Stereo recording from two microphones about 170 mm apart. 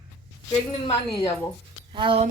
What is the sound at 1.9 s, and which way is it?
Speech, 30° right (ahead or behind).